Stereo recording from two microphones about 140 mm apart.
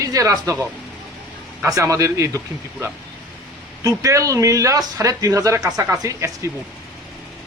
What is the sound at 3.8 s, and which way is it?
A man's voice, 25° right (ahead or behind).